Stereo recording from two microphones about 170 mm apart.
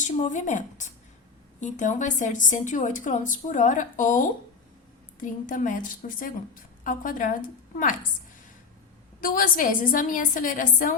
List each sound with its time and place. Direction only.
0.0 s a woman's voice: 45° left (ahead or behind)
9.2 s a woman's voice: 55° left (ahead or behind)